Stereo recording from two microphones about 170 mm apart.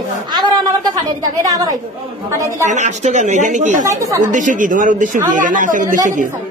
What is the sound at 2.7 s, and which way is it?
A man's voice, 45° right (ahead or behind).